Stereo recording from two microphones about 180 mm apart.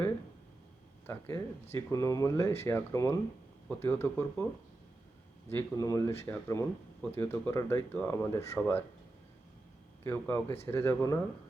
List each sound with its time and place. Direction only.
1.0 s speech: 10° left (ahead or behind)
5.5 s speech: 15° left (ahead or behind)
10.0 s speech: 15° left (ahead or behind)